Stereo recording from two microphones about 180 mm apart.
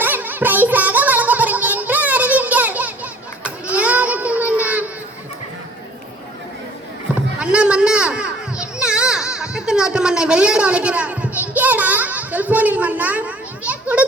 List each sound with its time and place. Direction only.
0.0 s music: 10° right (ahead or behind)
7.3 s children playing: 5° right (ahead or behind)